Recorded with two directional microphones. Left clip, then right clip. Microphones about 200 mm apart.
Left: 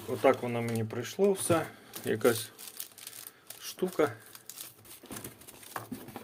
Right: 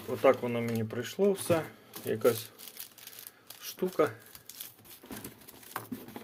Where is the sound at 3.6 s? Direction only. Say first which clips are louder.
Even; centre (ahead or behind).